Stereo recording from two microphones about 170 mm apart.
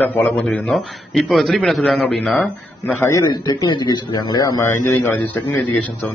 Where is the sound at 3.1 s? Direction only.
25° left (ahead or behind).